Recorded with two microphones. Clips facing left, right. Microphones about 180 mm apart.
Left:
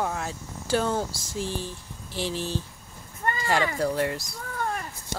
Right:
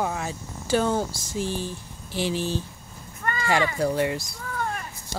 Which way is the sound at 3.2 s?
30° left (ahead or behind).